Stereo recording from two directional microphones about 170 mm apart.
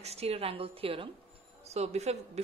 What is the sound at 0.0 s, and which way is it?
Speech, 35° right (ahead or behind).